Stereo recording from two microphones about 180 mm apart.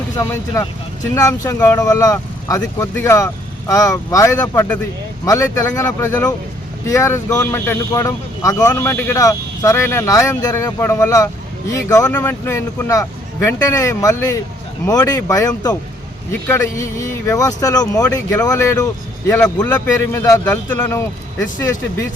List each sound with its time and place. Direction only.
0.2 s speech: 20° left (ahead or behind)